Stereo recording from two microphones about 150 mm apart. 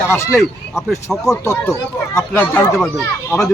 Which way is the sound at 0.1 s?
15° left (ahead or behind).